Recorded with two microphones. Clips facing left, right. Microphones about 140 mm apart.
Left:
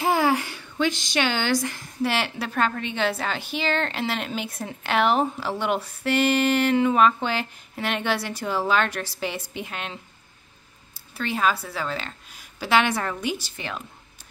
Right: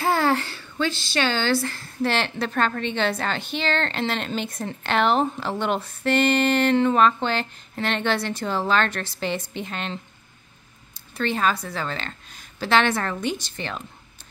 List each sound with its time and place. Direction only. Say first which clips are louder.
0.0 s speech: even; 15° left (ahead or behind)
11.1 s speech: right 1 dB; 5° left (ahead or behind)